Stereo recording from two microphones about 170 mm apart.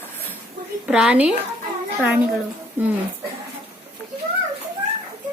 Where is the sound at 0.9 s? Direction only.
5° right (ahead or behind).